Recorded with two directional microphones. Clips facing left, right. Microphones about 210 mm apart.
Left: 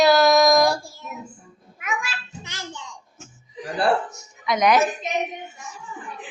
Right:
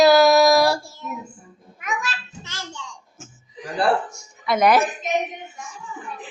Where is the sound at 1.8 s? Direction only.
10° left (ahead or behind).